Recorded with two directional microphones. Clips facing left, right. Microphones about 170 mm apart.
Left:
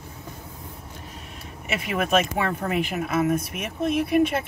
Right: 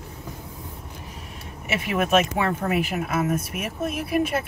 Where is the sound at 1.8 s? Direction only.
5° right (ahead or behind).